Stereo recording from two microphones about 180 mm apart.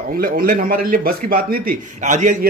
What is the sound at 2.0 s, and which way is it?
Speech, 45° right (ahead or behind).